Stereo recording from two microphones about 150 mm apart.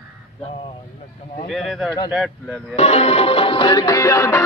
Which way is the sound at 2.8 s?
45° left (ahead or behind).